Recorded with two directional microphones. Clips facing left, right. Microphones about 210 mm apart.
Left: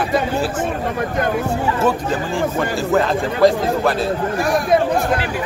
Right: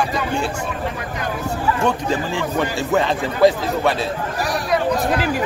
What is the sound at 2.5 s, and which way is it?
A man's voice, centre (ahead or behind).